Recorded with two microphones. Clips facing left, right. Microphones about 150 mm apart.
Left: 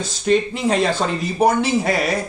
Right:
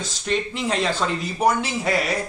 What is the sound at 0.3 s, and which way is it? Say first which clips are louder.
Speech: left 7 dB; 45° left (ahead or behind).